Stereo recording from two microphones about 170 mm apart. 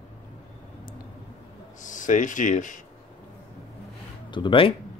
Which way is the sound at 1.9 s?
50° left (ahead or behind).